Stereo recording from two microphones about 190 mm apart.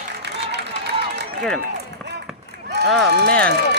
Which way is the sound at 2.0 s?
65° right (ahead or behind).